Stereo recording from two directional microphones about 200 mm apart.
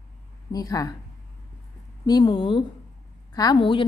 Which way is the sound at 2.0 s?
20° left (ahead or behind).